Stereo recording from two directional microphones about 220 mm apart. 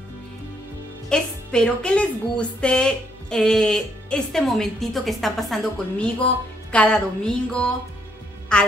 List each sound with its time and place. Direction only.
1.0 s speech: 5° left (ahead or behind)